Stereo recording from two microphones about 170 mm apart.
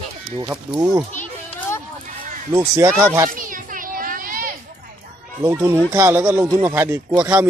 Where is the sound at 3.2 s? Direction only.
55° right (ahead or behind).